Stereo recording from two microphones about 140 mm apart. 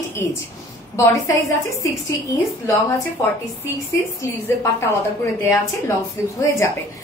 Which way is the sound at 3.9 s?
20° left (ahead or behind).